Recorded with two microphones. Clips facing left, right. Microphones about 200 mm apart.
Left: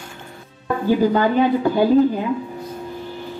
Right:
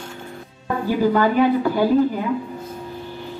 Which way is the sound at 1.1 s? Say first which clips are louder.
Even; 20° left (ahead or behind).